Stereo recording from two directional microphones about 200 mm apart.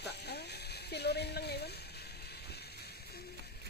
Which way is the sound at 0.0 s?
55° left (ahead or behind).